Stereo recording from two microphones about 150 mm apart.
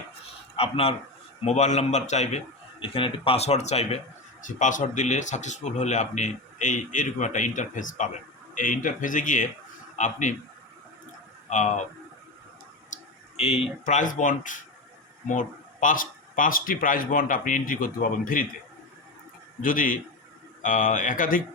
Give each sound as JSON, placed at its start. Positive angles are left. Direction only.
{"t": 0.5, "sound": "a man's voice", "side_deg": 40}
{"t": 2.8, "sound": "speech", "side_deg": 35}
{"t": 4.4, "sound": "a man's voice", "side_deg": 55}
{"t": 11.4, "sound": "speech", "side_deg": 55}
{"t": 12.9, "sound": "speech", "side_deg": 45}
{"t": 19.6, "sound": "speech", "side_deg": 65}